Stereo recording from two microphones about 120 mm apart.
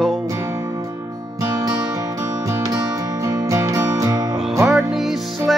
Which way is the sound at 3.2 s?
25° right (ahead or behind).